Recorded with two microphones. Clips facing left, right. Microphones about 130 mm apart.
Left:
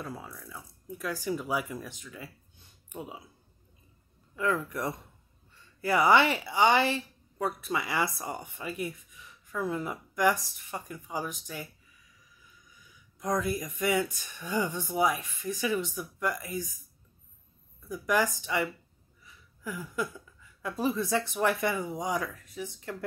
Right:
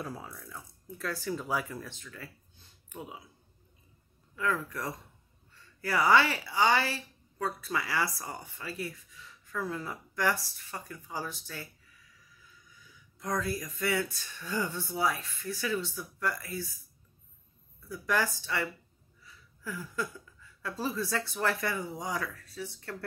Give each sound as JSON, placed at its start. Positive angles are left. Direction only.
{"t": 0.0, "sound": "speech", "side_deg": 0}
{"t": 4.4, "sound": "a woman's voice", "side_deg": 25}
{"t": 12.7, "sound": "speech", "side_deg": 20}
{"t": 17.8, "sound": "speech", "side_deg": 15}
{"t": 19.2, "sound": "a sound", "side_deg": 15}
{"t": 20.6, "sound": "a woman's voice", "side_deg": 20}